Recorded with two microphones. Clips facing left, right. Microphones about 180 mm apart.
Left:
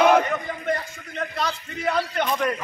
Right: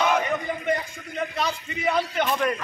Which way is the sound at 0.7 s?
10° right (ahead or behind).